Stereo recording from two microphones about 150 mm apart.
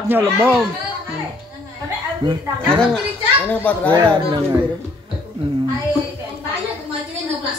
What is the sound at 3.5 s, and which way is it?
Speech, 10° left (ahead or behind).